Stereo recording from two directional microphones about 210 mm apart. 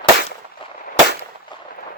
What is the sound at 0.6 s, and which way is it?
Firecracker, 25° left (ahead or behind).